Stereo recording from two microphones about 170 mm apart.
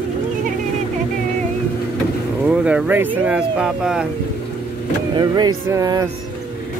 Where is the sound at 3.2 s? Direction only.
5° right (ahead or behind).